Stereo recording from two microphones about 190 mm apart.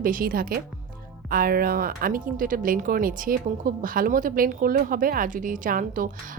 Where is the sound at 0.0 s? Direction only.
45° right (ahead or behind).